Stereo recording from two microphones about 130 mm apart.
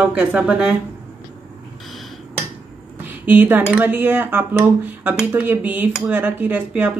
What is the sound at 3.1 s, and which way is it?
Speech, 15° right (ahead or behind).